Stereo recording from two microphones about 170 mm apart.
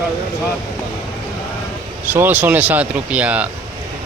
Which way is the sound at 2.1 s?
10° right (ahead or behind).